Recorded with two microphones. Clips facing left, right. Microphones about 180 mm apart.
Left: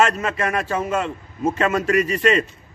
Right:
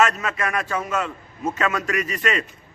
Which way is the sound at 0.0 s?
30° left (ahead or behind).